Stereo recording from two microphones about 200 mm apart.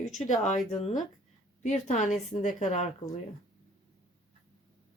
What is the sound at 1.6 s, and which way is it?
Speech, 35° left (ahead or behind).